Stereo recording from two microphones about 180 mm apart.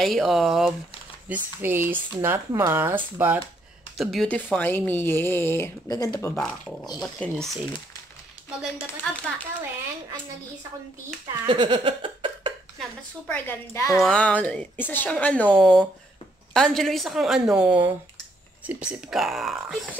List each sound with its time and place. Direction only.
0.0 s a woman's voice: centre (ahead or behind)
1.3 s speech: 10° right (ahead or behind)
4.0 s a woman's voice: centre (ahead or behind); by 6.3 s 20° left (ahead or behind)
6.3 s a woman's voice: centre (ahead or behind)
9.1 s a woman's voice: 5° left (ahead or behind)
11.4 s a sound: 25° right (ahead or behind)
13.3 s a woman's voice: 15° left (ahead or behind)